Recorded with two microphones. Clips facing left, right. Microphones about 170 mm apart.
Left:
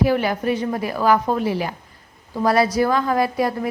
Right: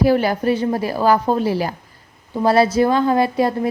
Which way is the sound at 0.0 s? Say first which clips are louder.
Right 3 dB; 35° right (ahead or behind).